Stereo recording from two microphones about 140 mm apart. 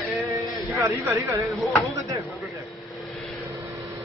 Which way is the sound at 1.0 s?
20° right (ahead or behind).